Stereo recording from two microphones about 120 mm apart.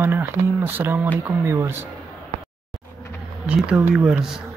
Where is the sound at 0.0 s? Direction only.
15° right (ahead or behind).